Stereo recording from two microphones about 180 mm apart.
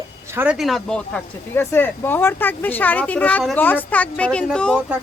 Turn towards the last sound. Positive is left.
turn(degrees=5)  # may be behind; listen again after turning